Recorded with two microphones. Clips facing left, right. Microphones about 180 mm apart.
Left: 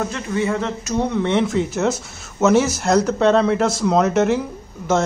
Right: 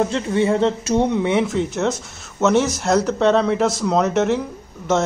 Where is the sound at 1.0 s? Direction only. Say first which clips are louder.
Left 3 dB; 10° right (ahead or behind).